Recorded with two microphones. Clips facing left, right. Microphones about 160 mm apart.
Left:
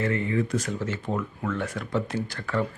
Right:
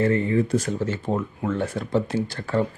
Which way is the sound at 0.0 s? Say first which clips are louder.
Right 5 dB; 35° right (ahead or behind).